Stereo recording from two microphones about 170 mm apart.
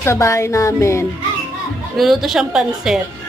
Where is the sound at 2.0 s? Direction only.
Centre (ahead or behind).